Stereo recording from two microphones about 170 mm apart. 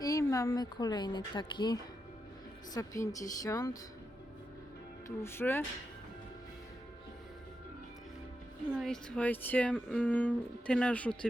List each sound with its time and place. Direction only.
0.0 s a woman's voice: 20° left (ahead or behind)
5.0 s speech: 15° left (ahead or behind)
8.7 s speech: centre (ahead or behind)